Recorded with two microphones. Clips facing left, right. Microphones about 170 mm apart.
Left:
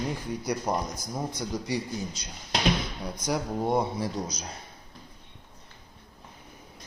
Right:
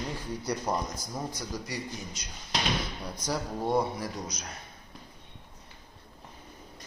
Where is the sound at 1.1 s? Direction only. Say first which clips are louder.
Left 4 dB; 25° left (ahead or behind).